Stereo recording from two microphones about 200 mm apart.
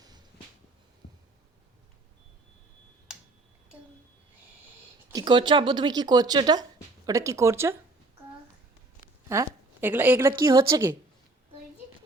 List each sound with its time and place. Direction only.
5.1 s speech: 20° right (ahead or behind)
9.3 s a woman's voice: 10° right (ahead or behind)